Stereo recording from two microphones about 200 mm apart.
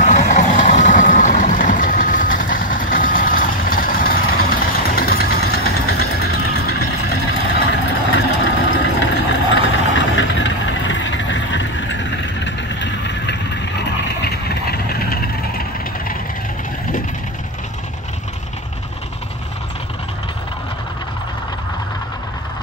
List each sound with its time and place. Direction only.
0.0 s vehicle: 40° left (ahead or behind)